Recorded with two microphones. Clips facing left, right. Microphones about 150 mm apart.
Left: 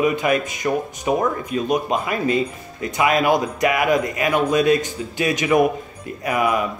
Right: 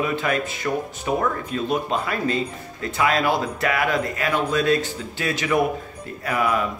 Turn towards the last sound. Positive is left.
turn(degrees=15)  # may be behind; listen again after turning